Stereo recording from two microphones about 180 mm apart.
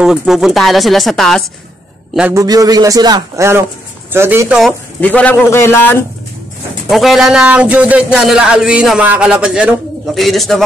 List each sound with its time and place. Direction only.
0.0 s a man's voice: 5° right (ahead or behind)
2.3 s speech: 20° right (ahead or behind); by 4.7 s 5° right (ahead or behind)
5.0 s a man's voice: 10° left (ahead or behind)
6.9 s a man's voice: centre (ahead or behind)